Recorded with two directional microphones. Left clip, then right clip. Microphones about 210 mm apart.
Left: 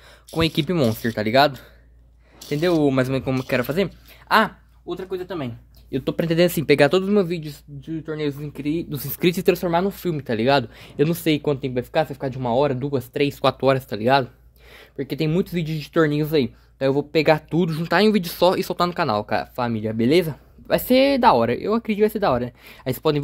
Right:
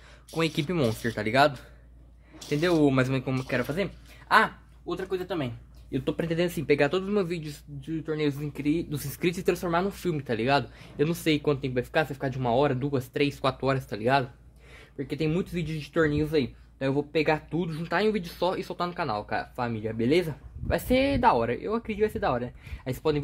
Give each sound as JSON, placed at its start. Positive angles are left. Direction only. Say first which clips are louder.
{"t": 0.3, "sound": "speech", "louder": "left 6 dB", "side_deg": 25}